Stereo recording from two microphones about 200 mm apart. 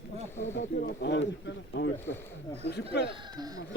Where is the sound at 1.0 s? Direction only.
60° left (ahead or behind).